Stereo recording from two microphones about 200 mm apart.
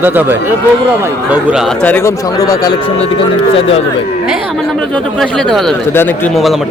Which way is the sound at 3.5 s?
30° left (ahead or behind).